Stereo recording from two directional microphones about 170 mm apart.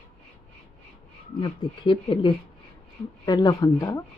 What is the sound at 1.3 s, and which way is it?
Speech, 30° left (ahead or behind).